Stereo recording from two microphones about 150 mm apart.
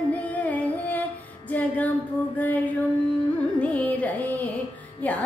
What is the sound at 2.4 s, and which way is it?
Mantra, 10° left (ahead or behind).